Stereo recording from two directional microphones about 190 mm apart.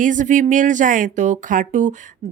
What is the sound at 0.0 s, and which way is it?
Speech, 40° right (ahead or behind).